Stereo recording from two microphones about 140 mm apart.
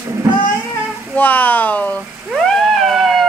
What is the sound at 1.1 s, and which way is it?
Speech, 10° left (ahead or behind).